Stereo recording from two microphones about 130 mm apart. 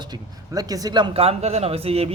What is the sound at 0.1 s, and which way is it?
Speech, 30° right (ahead or behind).